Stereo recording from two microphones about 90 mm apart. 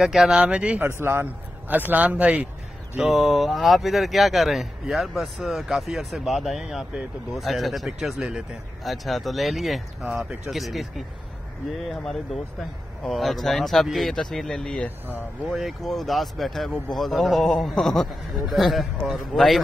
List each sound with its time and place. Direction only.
0.0 s speech: 5° right (ahead or behind)
1.0 s a man's voice: 25° right (ahead or behind)
3.0 s speech: centre (ahead or behind); by 15.1 s 15° left (ahead or behind)
15.5 s speech: centre (ahead or behind)